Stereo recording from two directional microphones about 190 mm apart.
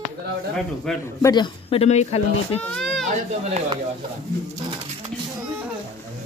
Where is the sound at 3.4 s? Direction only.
35° right (ahead or behind).